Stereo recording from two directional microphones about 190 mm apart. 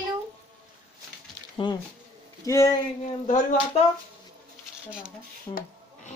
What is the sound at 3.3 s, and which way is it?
Speech, 40° left (ahead or behind).